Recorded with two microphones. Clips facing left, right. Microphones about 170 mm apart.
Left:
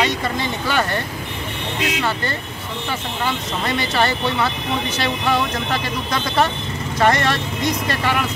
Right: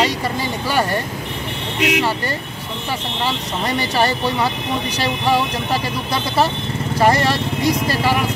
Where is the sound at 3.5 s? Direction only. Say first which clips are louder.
Right 1 dB; 10° right (ahead or behind).